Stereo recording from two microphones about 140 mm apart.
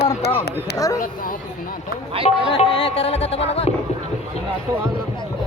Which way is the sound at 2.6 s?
45° left (ahead or behind).